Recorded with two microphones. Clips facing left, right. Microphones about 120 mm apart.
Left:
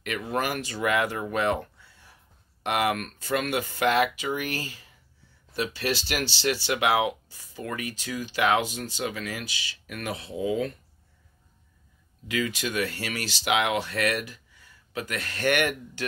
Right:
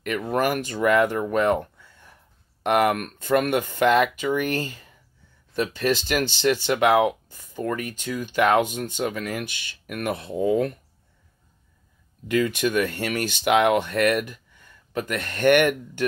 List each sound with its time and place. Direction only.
0.0 s speech: 45° right (ahead or behind)
2.6 s speech: 50° right (ahead or behind)
12.3 s speech: 50° right (ahead or behind)